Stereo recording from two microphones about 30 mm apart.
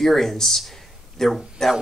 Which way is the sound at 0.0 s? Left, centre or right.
Centre.